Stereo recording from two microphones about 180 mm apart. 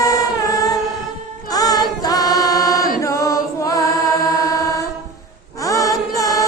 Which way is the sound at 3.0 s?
15° left (ahead or behind).